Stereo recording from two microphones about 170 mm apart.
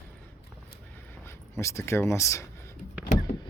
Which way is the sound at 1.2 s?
15° left (ahead or behind).